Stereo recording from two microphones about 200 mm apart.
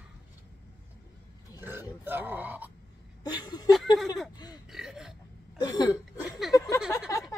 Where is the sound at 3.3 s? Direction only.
20° left (ahead or behind).